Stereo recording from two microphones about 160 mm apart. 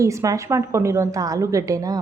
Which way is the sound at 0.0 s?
20° right (ahead or behind).